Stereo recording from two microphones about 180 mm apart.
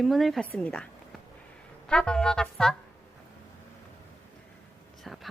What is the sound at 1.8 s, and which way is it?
Speech, 5° left (ahead or behind).